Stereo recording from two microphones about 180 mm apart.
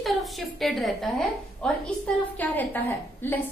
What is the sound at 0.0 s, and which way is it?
A woman's voice, centre (ahead or behind).